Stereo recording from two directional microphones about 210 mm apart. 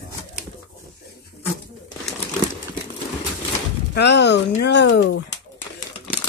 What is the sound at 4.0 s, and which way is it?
Speech, 55° left (ahead or behind).